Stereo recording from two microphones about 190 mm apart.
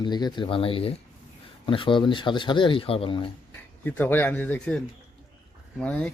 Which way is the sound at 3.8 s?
10° left (ahead or behind).